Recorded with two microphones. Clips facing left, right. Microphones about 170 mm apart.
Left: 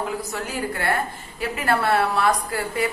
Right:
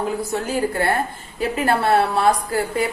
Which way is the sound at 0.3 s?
30° right (ahead or behind).